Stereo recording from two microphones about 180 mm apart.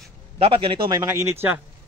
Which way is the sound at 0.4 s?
30° right (ahead or behind).